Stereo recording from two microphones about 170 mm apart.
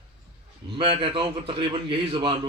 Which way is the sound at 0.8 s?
30° right (ahead or behind).